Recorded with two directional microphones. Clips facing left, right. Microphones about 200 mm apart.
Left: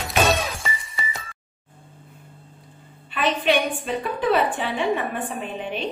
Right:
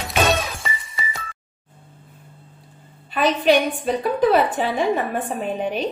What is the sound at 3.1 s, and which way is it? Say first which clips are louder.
A woman's voice: right 4 dB; 40° right (ahead or behind).